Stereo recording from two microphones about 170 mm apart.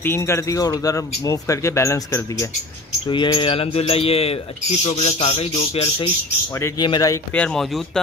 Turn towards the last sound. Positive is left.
turn(degrees=0)  # may be behind; listen again after turning